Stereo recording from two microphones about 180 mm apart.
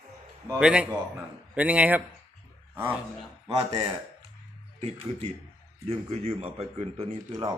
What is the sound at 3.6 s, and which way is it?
Speech, 30° right (ahead or behind).